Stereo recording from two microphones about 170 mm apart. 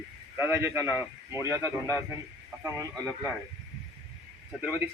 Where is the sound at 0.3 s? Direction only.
15° right (ahead or behind).